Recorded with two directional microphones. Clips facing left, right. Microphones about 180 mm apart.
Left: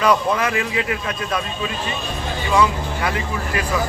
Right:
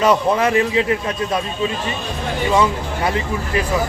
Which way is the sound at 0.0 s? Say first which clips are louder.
Right 3 dB; 30° right (ahead or behind).